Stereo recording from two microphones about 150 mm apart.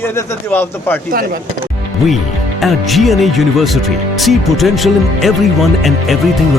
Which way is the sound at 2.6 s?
Centre (ahead or behind).